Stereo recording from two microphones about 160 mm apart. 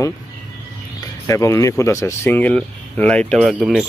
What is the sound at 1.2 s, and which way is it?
Speech, 20° left (ahead or behind).